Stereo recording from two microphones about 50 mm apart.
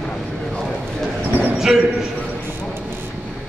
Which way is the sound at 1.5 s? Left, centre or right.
Centre.